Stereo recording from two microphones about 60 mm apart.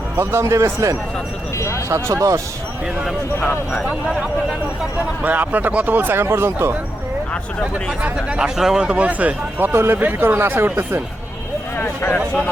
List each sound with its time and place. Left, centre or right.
0.2 s speech: right
1.5 s speech: left
1.9 s speech: right
3.8 s speech: centre
4.9 s speech: right
8.0 s speech: right
8.4 s speech: centre; by 11.0 s right
11.8 s speech: left